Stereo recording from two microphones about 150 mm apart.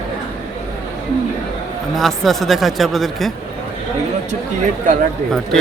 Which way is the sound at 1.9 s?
Centre (ahead or behind).